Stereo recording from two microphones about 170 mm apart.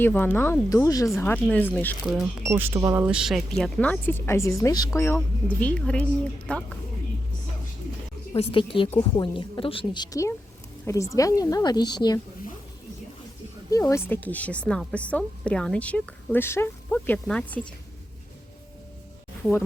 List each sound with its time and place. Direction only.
0.0 s a woman's voice: 10° left (ahead or behind)
2.5 s a woman's voice: 15° right (ahead or behind); by 6.6 s 5° left (ahead or behind)
8.4 s a woman's voice: 30° left (ahead or behind)
13.7 s a woman's voice: 20° left (ahead or behind)